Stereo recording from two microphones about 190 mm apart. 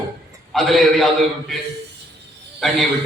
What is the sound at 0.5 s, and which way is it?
A man's voice, centre (ahead or behind).